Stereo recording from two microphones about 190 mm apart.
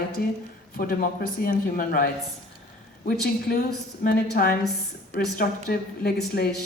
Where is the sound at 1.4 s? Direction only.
50° left (ahead or behind).